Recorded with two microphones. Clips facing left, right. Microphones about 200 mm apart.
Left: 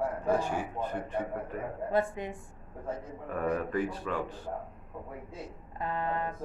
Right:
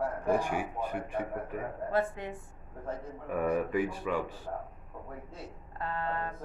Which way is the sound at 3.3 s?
10° right (ahead or behind).